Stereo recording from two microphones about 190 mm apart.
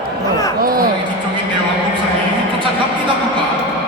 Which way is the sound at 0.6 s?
50° right (ahead or behind).